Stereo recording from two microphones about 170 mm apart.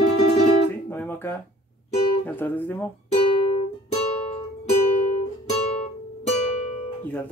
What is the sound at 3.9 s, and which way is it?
Music, 35° left (ahead or behind).